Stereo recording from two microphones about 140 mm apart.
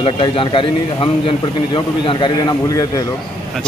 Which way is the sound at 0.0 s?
40° left (ahead or behind).